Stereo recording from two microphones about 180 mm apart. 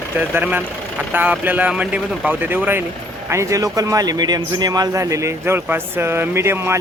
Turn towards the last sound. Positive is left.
turn(degrees=-15)  # may be behind; listen again after turning